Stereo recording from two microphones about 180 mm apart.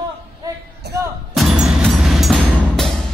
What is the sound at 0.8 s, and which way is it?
Music, 65° right (ahead or behind).